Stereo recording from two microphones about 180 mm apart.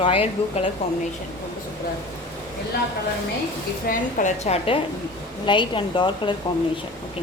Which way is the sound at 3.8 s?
40° left (ahead or behind).